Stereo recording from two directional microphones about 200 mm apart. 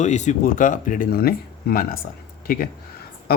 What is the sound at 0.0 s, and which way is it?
Speech, 35° left (ahead or behind).